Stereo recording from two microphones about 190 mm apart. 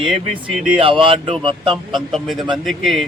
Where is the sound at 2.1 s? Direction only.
Centre (ahead or behind).